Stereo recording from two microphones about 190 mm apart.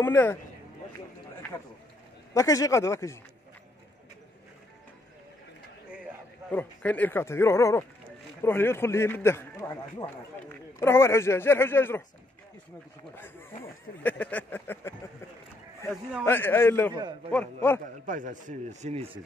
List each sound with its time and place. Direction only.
0.0 s a man's voice: 10° left (ahead or behind)
2.3 s a man's voice: 15° left (ahead or behind)
6.5 s a man's voice: 10° left (ahead or behind)
13.1 s a man's voice: 10° left (ahead or behind)
16.3 s a man's voice: 10° left (ahead or behind)
18.0 s speech: 45° right (ahead or behind)